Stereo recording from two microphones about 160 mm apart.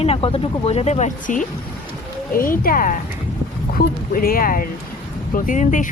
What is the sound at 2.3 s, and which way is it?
Speech, 60° left (ahead or behind).